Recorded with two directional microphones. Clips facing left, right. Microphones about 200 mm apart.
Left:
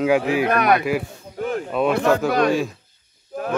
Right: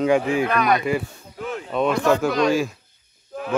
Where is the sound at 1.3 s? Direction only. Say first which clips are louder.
Left 5 dB; 50° left (ahead or behind).